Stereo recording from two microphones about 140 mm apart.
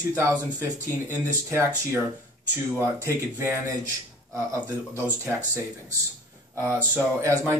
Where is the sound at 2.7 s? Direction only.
20° right (ahead or behind).